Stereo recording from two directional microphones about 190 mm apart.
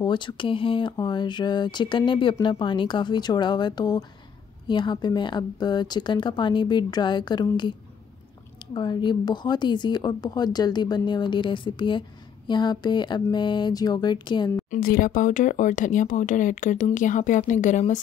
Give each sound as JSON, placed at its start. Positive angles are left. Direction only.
{"t": 0.0, "sound": "speech", "side_deg": 25}
{"t": 8.7, "sound": "speech", "side_deg": 25}
{"t": 14.7, "sound": "speech", "side_deg": 50}